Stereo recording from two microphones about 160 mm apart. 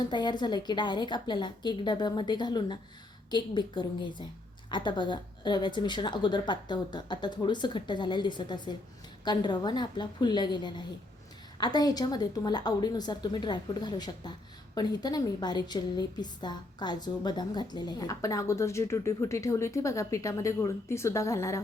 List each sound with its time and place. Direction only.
0.1 s a woman's voice: 25° left (ahead or behind)